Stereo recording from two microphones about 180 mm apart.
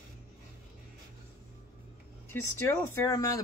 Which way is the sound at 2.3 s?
15° left (ahead or behind).